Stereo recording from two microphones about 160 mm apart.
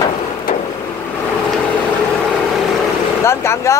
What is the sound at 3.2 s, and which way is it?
Vehicle, 15° left (ahead or behind).